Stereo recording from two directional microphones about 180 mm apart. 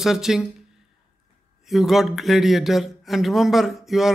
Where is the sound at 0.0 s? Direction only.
Centre (ahead or behind).